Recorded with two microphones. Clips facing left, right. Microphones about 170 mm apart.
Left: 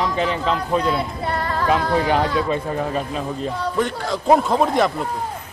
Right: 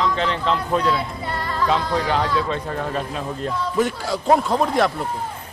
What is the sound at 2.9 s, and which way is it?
A man's voice, centre (ahead or behind).